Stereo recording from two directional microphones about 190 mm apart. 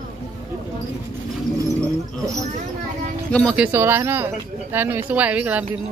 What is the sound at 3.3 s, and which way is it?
Speech, 5° left (ahead or behind).